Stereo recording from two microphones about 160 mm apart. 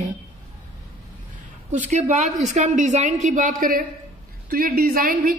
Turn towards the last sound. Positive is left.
turn(degrees=-65)  # may be behind; listen again after turning